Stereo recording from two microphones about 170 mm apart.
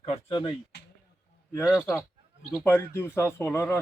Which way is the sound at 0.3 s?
30° left (ahead or behind).